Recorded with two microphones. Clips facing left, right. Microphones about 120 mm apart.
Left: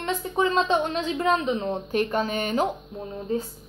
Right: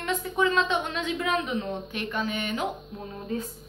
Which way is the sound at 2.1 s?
40° left (ahead or behind).